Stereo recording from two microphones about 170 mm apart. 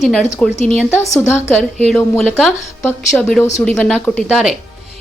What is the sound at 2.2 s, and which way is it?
Speech, centre (ahead or behind).